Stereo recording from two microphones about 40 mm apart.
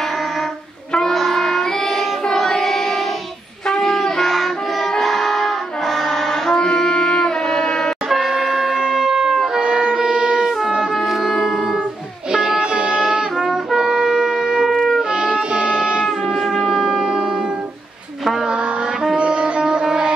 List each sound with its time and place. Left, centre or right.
1.1 s child singing: centre
3.6 s shofar: centre
4.9 s brass instrument: centre
6.5 s music: centre
8.1 s shofar: centre
9.6 s wind instrument: right
11.0 s music: centre
13.8 s shofar: centre
15.0 s wind instrument: right
16.3 s shofar: centre
19.1 s music: right
19.6 s a sound: centre